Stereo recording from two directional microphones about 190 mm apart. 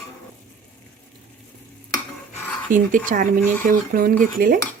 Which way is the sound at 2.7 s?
45° right (ahead or behind).